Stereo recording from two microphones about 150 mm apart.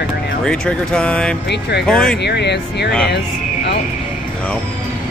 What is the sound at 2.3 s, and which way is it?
Speech, 90° left.